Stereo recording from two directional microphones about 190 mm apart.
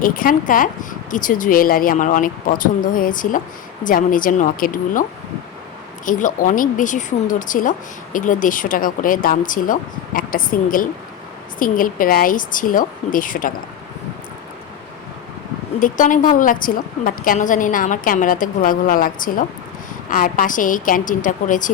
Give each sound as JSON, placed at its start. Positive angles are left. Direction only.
{"t": 0.0, "sound": "a woman's voice", "side_deg": 50}
{"t": 6.1, "sound": "a woman's voice", "side_deg": 45}
{"t": 15.8, "sound": "a woman's voice", "side_deg": 45}